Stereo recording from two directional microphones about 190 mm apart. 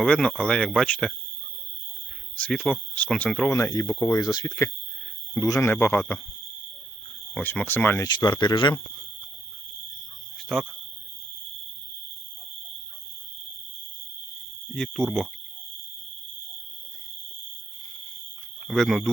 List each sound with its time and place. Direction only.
0.0 s speech: 5° left (ahead or behind)
2.4 s speech: 5° left (ahead or behind)
3.5 s speech: 15° left (ahead or behind)
7.3 s speech: 10° left (ahead or behind)
8.0 s speech: 25° left (ahead or behind)
10.5 s speech: centre (ahead or behind)
14.8 s speech: centre (ahead or behind)
18.7 s speech: centre (ahead or behind)